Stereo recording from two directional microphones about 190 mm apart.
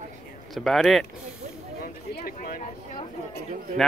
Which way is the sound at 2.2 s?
45° left (ahead or behind).